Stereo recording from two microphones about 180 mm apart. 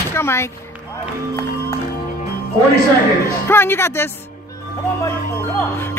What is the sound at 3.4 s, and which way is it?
Speech, 10° left (ahead or behind).